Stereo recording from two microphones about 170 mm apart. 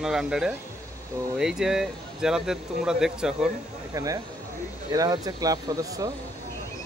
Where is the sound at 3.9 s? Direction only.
20° right (ahead or behind).